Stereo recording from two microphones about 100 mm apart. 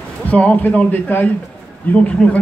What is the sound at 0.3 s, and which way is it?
Speech, 15° left (ahead or behind).